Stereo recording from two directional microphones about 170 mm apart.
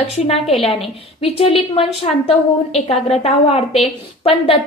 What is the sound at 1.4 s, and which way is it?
A woman's voice, 35° left (ahead or behind).